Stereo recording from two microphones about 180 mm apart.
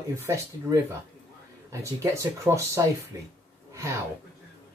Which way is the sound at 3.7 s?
15° right (ahead or behind).